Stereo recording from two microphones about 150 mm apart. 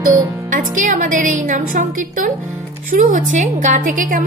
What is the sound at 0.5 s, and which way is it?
A woman's voice, 60° right (ahead or behind).